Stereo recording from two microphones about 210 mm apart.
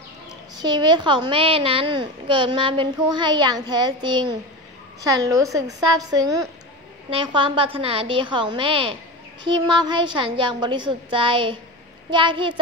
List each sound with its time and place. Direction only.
0.6 s a child's voice: 20° right (ahead or behind)